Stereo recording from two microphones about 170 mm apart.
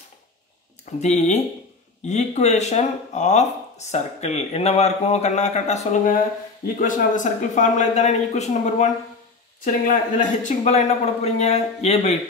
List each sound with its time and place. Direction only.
1.0 s speech: 45° left (ahead or behind)